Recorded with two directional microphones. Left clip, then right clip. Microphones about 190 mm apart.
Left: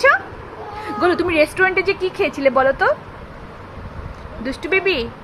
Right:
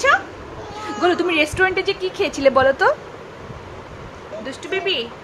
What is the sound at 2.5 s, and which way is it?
Speech, 5° right (ahead or behind).